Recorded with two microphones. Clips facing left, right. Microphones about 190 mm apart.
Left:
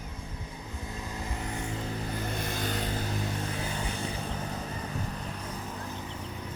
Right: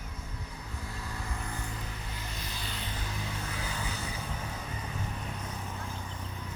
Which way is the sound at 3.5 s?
25° left (ahead or behind).